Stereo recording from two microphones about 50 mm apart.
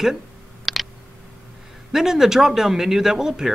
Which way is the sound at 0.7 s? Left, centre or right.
Centre.